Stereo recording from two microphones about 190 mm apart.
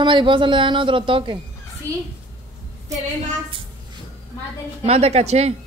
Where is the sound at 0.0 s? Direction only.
25° right (ahead or behind).